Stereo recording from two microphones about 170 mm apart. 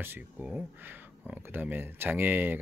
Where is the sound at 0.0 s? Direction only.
10° right (ahead or behind).